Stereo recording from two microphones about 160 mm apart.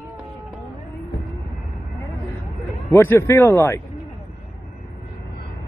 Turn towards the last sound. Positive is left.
turn(degrees=15)  # may be behind; listen again after turning